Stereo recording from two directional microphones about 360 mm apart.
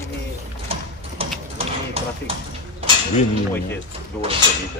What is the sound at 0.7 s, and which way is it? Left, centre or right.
Horse, centre.